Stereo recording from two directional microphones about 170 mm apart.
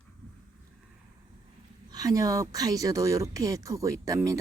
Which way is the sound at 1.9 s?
20° right (ahead or behind).